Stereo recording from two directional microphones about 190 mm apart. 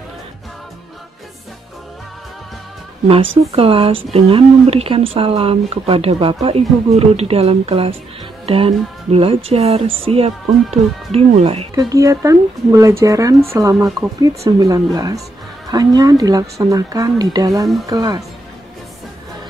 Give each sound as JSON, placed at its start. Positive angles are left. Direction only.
{"t": 3.5, "sound": "speech", "side_deg": -30}
{"t": 11.7, "sound": "speech", "side_deg": -20}